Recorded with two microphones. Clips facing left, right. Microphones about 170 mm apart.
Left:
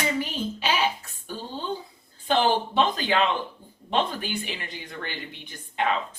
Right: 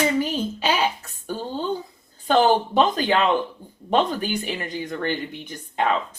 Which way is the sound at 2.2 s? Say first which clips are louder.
Right 5 dB; 45° right (ahead or behind).